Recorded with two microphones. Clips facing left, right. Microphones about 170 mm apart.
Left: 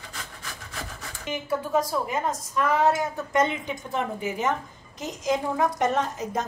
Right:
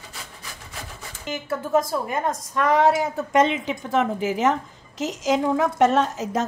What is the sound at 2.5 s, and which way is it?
A woman's voice, 70° right (ahead or behind).